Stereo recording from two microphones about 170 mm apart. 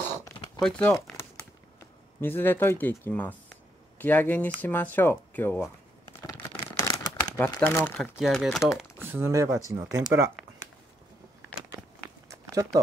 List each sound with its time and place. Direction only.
0.6 s speech: 5° left (ahead or behind)
2.1 s speech: 10° left (ahead or behind)
6.6 s crumpling: 20° left (ahead or behind)
7.4 s speech: 15° left (ahead or behind)
8.0 s speech: centre (ahead or behind)
9.0 s speech: 15° right (ahead or behind)
12.3 s a sound: 20° right (ahead or behind)